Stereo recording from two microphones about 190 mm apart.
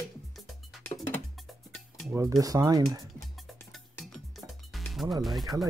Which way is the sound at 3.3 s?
Centre (ahead or behind).